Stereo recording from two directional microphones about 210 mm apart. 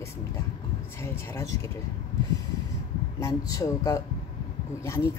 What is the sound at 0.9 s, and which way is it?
Speech, 10° left (ahead or behind).